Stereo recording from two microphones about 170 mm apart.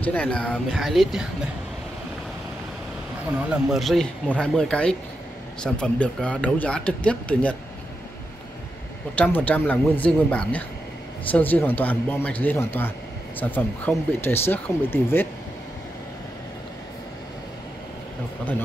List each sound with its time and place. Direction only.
0.0 s speech: 10° left (ahead or behind)
3.7 s speech: centre (ahead or behind)
9.1 s speech: 10° left (ahead or behind)